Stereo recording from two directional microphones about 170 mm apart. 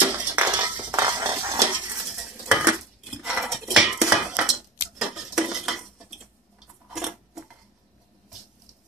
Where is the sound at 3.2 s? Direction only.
Centre (ahead or behind).